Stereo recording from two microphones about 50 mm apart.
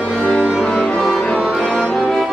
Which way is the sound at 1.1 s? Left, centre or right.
Centre.